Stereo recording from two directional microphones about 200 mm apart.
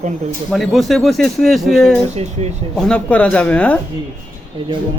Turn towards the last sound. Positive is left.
turn(degrees=5)  # may be behind; listen again after turning